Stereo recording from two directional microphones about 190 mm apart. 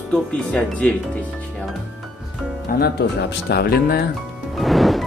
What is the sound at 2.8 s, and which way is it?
Speech, 60° left (ahead or behind).